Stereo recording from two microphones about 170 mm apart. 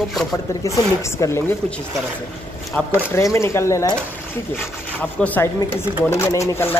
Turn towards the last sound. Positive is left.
turn(degrees=15)  # may be behind; listen again after turning